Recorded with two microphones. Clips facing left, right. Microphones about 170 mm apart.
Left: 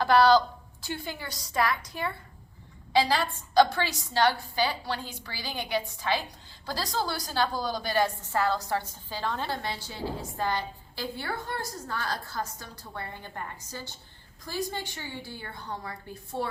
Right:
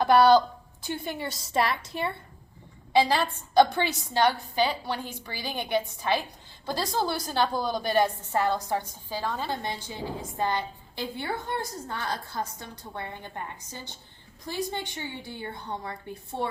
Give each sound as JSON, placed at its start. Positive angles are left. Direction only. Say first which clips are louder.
{"t": 0.0, "sound": "a woman's voice", "louder": "right 2 dB", "side_deg": -20}